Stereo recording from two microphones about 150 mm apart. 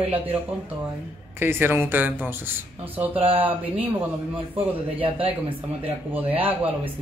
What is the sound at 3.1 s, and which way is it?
Speech, 35° right (ahead or behind).